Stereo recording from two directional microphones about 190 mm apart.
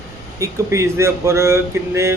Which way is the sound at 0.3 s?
15° right (ahead or behind).